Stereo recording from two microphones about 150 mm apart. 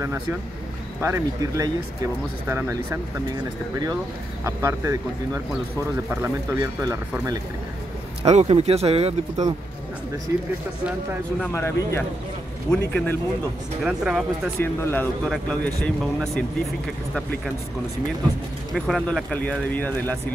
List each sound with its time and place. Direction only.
0.0 s speech: 20° right (ahead or behind)
4.5 s speech: 20° right (ahead or behind)
8.2 s speech: 45° right (ahead or behind)
11.4 s speech: 15° left (ahead or behind)
13.8 s speech: 5° right (ahead or behind)
14.6 s speech: 15° left (ahead or behind)
15.2 s speech: centre (ahead or behind)
18.7 s speech: centre (ahead or behind)